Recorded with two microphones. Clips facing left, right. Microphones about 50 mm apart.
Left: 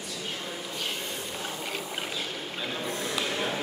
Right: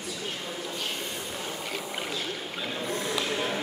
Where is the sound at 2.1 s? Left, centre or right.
Centre.